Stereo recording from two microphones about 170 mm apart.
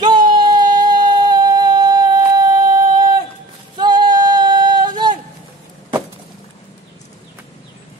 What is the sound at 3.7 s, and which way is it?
Female singing, 25° right (ahead or behind).